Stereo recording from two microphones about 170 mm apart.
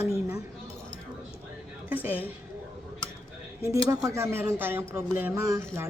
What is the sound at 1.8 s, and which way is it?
Speech, 10° right (ahead or behind).